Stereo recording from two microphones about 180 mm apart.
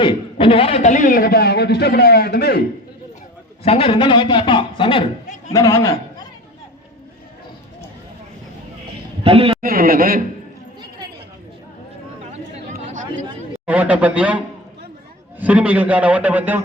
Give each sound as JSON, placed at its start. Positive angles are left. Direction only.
{"t": 0.0, "sound": "a man's voice", "side_deg": 30}
{"t": 3.6, "sound": "a man's voice", "side_deg": 30}
{"t": 5.5, "sound": "a man's voice", "side_deg": 20}
{"t": 9.2, "sound": "a man's voice", "side_deg": -30}
{"t": 9.6, "sound": "a man's voice", "side_deg": -55}
{"t": 12.8, "sound": "chatter", "side_deg": -45}
{"t": 13.7, "sound": "a man's voice", "side_deg": -10}